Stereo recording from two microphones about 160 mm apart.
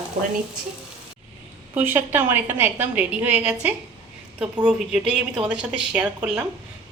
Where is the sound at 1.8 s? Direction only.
15° right (ahead or behind).